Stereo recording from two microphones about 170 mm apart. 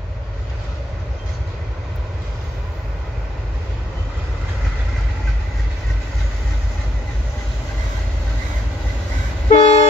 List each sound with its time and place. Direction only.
9.5 s vehicle: 40° left (ahead or behind)